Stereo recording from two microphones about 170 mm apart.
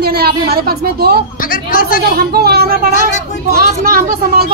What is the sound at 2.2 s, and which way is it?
A woman's voice, 65° right (ahead or behind).